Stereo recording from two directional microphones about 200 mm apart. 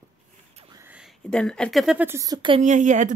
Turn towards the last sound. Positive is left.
turn(degrees=-40)  # may be behind; listen again after turning